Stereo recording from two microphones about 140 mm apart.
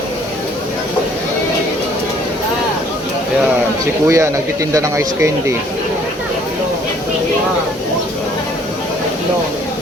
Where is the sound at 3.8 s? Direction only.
20° right (ahead or behind).